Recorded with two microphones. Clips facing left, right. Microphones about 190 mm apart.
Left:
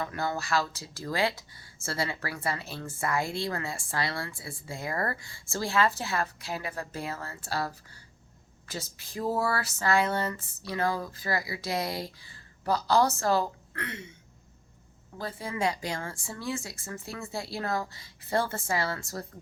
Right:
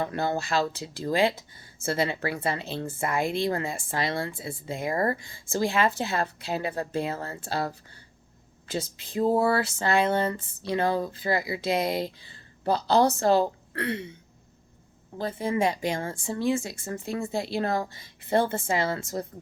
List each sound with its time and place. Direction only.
0.0 s speech: 30° right (ahead or behind)
15.2 s speech: 25° right (ahead or behind)